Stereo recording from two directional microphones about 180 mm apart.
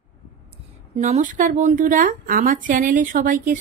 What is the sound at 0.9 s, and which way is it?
Speech, 40° right (ahead or behind).